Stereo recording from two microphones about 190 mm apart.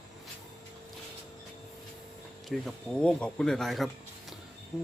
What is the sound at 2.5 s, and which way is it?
Speech, 5° left (ahead or behind).